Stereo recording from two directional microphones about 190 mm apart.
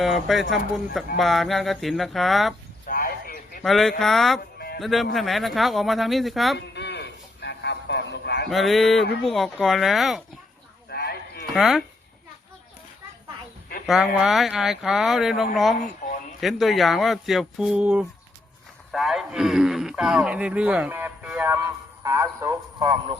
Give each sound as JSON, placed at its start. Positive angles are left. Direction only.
{"t": 0.0, "sound": "speech", "side_deg": 0}
{"t": 2.8, "sound": "a sound", "side_deg": 50}
{"t": 3.6, "sound": "speech", "side_deg": 0}
{"t": 4.5, "sound": "music", "side_deg": 55}
{"t": 4.8, "sound": "speech", "side_deg": 0}
{"t": 6.6, "sound": "a sound", "side_deg": 65}
{"t": 8.4, "sound": "speech", "side_deg": 0}
{"t": 10.8, "sound": "a sound", "side_deg": 55}
{"t": 11.5, "sound": "speech", "side_deg": 0}
{"t": 13.8, "sound": "speech", "side_deg": 0}
{"t": 16.0, "sound": "a sound", "side_deg": 40}
{"t": 16.4, "sound": "a man's voice", "side_deg": 0}